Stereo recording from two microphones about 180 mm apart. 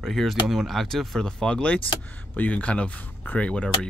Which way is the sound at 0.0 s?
Centre (ahead or behind).